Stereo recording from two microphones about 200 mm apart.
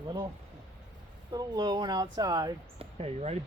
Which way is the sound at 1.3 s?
20° right (ahead or behind).